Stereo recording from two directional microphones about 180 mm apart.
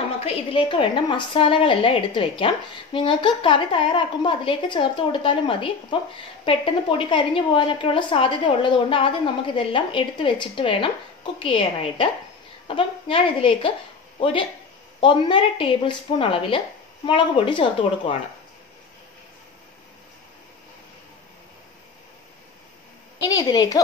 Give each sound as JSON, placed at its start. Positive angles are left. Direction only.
{"t": 0.2, "sound": "a woman's voice", "side_deg": 30}
{"t": 23.2, "sound": "a woman's voice", "side_deg": 20}